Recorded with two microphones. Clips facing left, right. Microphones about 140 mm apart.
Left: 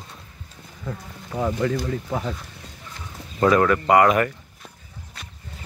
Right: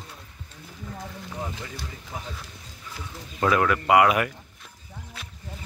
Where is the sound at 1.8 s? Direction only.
75° left (ahead or behind).